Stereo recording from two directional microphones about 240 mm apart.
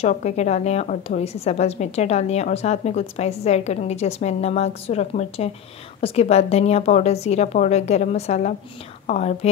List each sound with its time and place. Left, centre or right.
0.0 s a woman's voice: left